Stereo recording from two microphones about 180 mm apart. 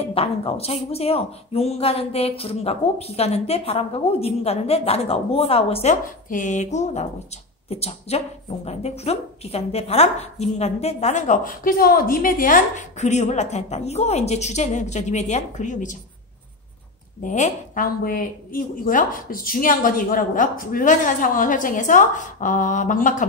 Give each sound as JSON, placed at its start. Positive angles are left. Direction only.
{"t": 0.0, "sound": "speech", "side_deg": 30}
{"t": 17.2, "sound": "a woman's voice", "side_deg": 45}